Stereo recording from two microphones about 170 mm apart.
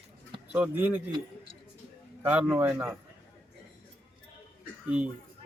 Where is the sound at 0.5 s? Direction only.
10° right (ahead or behind).